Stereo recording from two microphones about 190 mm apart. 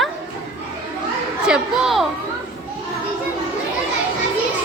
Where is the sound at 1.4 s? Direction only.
5° right (ahead or behind).